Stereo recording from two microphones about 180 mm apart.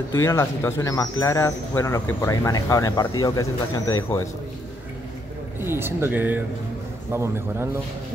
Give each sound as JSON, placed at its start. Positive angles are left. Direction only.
{"t": 0.1, "sound": "speech", "side_deg": 15}
{"t": 5.6, "sound": "speech", "side_deg": -15}